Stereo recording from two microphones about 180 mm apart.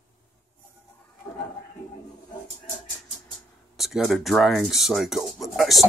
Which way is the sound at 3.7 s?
Centre (ahead or behind).